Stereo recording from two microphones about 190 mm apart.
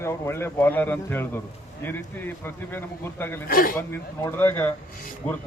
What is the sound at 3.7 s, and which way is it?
Speech, 15° left (ahead or behind).